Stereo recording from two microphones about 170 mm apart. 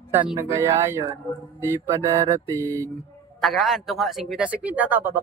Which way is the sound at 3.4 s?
Centre (ahead or behind).